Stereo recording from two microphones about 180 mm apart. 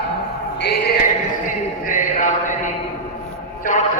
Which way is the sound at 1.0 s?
45° left (ahead or behind).